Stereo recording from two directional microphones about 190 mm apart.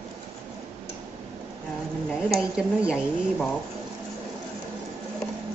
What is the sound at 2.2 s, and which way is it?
A woman's voice, centre (ahead or behind).